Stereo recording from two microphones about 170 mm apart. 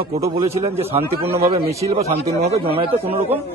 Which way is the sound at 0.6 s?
35° right (ahead or behind).